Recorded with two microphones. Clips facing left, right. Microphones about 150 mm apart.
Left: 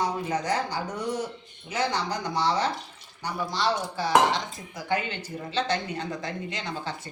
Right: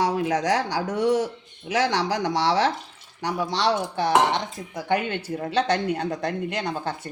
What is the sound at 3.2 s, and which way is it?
Dishes, 85° right.